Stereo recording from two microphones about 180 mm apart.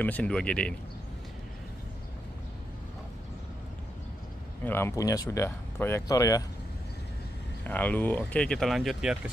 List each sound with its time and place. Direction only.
0.0 s speech: 10° left (ahead or behind)
4.6 s speech: 15° left (ahead or behind)
7.6 s speech: 10° left (ahead or behind)